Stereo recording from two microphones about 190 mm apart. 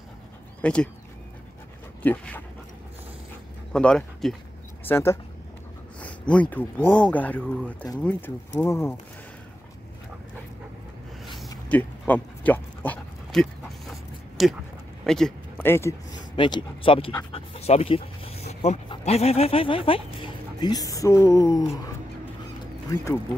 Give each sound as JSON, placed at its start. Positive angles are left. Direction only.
{"t": 0.6, "sound": "speech", "side_deg": 5}
{"t": 2.0, "sound": "speech", "side_deg": 10}
{"t": 3.7, "sound": "speech", "side_deg": 5}
{"t": 5.9, "sound": "a sound", "side_deg": 5}
{"t": 6.5, "sound": "speech", "side_deg": 10}
{"t": 11.7, "sound": "dog", "side_deg": 10}
{"t": 15.0, "sound": "speech", "side_deg": 5}
{"t": 16.3, "sound": "speech", "side_deg": 25}
{"t": 22.8, "sound": "speech", "side_deg": 15}